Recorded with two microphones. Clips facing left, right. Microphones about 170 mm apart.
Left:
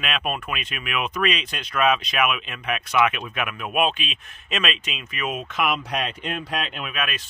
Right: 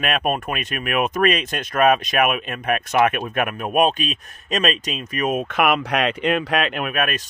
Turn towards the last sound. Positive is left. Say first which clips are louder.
# right 7 dB
turn(degrees=-50)  # may be behind; listen again after turning